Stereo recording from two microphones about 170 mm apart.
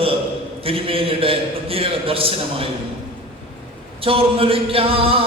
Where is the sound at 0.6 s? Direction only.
35° right (ahead or behind).